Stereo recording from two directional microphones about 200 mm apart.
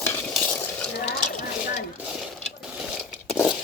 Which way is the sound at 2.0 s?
Centre (ahead or behind).